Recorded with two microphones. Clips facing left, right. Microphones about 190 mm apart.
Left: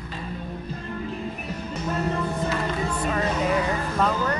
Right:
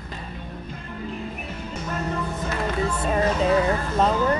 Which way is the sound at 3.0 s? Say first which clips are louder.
Right 3 dB; 25° right (ahead or behind).